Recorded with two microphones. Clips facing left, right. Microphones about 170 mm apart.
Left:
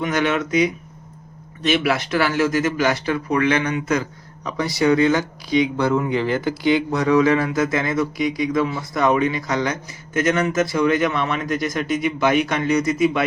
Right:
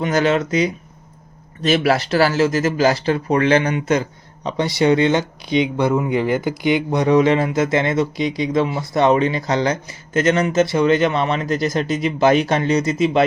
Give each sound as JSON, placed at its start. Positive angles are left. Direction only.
{"t": 0.0, "sound": "speech", "side_deg": -30}